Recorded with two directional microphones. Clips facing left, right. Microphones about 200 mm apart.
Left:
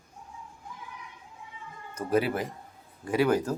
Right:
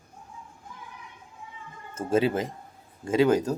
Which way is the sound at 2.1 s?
25° right (ahead or behind).